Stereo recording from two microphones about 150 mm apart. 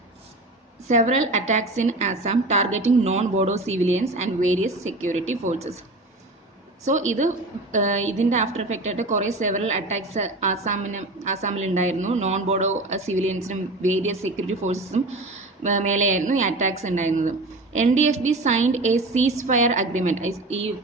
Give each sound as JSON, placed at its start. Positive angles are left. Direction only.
{"t": 0.9, "sound": "a woman's voice", "side_deg": -50}
{"t": 6.8, "sound": "a woman's voice", "side_deg": -50}